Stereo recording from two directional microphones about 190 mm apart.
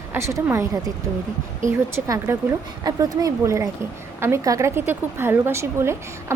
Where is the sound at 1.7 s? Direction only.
15° right (ahead or behind).